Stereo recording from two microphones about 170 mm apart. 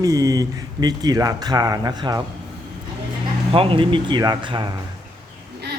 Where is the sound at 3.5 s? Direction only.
30° right (ahead or behind).